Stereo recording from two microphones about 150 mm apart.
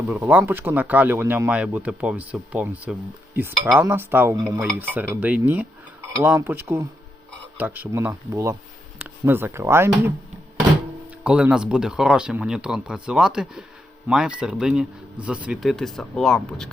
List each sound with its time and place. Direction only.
0.1 s speech: 10° right (ahead or behind)
11.2 s speech: 10° right (ahead or behind)